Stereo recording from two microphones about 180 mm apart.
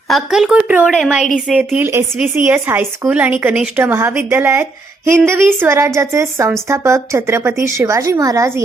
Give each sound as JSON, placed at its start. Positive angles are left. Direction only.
{"t": 0.1, "sound": "speech", "side_deg": 0}